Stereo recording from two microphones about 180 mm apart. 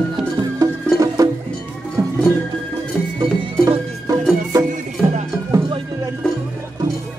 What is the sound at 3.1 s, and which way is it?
Music, 25° right (ahead or behind).